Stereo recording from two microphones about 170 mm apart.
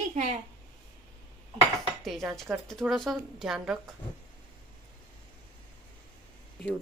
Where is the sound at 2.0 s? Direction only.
Centre (ahead or behind).